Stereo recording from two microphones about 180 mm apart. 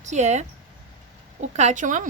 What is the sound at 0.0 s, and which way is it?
Speech, 40° right (ahead or behind).